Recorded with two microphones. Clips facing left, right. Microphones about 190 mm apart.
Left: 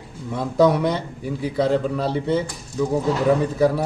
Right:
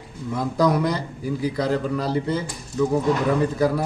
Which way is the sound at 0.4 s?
5° left (ahead or behind).